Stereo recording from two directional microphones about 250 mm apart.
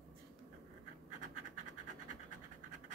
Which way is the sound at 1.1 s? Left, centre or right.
Right.